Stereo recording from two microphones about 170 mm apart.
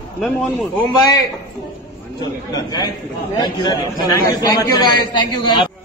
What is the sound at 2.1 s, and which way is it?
A man's voice, 25° left (ahead or behind).